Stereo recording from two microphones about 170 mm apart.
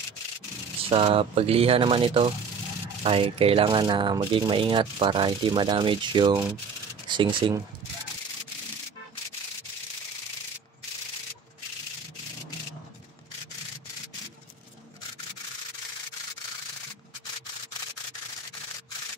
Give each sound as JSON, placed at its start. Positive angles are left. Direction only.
{"t": 0.8, "sound": "speech", "side_deg": -35}